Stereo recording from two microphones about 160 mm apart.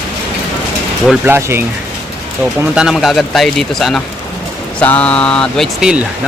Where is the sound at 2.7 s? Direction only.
5° right (ahead or behind).